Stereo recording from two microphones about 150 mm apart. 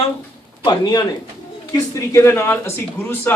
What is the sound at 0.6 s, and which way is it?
Speech, 25° left (ahead or behind).